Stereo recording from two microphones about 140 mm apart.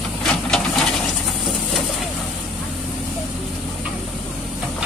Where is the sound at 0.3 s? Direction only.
5° left (ahead or behind).